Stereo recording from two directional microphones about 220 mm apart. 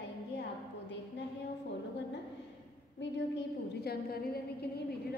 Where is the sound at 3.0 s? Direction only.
50° left (ahead or behind).